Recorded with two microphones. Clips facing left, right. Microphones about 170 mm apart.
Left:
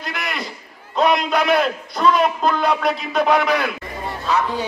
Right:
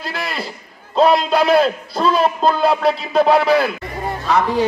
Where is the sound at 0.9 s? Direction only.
30° right (ahead or behind).